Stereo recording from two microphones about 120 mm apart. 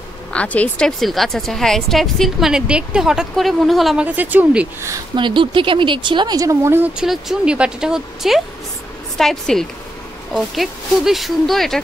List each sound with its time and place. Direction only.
0.3 s a woman's voice: 10° left (ahead or behind)
4.0 s speech: 15° right (ahead or behind)
5.1 s speech: 45° right (ahead or behind); by 6.9 s 20° right (ahead or behind)
7.0 s a woman's voice: 5° right (ahead or behind)